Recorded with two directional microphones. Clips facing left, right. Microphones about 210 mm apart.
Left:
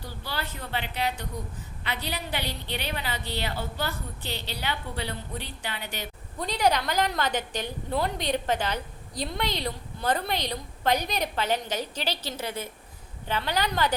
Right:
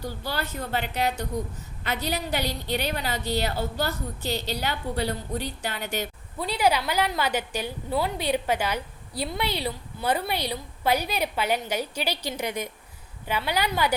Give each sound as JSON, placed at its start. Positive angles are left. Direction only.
{"t": 0.0, "sound": "a woman's voice", "side_deg": -45}
{"t": 6.4, "sound": "a woman's voice", "side_deg": -5}